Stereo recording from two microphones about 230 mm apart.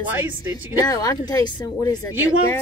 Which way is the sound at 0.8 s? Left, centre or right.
Centre.